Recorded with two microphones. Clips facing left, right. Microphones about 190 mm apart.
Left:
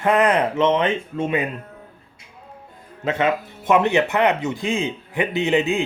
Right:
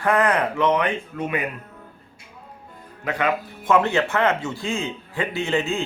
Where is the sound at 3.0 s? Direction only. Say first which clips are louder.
Left 3 dB; 25° left (ahead or behind).